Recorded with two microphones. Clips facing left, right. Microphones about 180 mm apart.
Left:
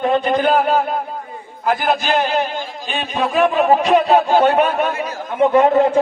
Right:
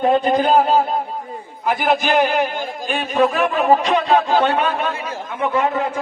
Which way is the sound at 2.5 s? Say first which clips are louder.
Right 1 dB; 50° right (ahead or behind).